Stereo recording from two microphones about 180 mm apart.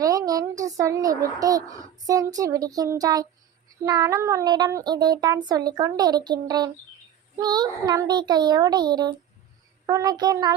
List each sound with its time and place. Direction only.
0.0 s a child's voice: 20° right (ahead or behind)
3.8 s child singing: 20° right (ahead or behind)